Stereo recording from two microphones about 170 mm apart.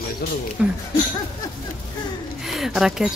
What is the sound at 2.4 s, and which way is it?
Speech, centre (ahead or behind).